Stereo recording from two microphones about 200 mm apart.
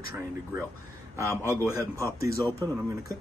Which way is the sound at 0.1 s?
10° right (ahead or behind).